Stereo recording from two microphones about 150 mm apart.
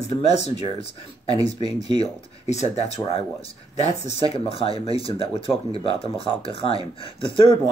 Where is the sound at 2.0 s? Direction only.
45° left (ahead or behind).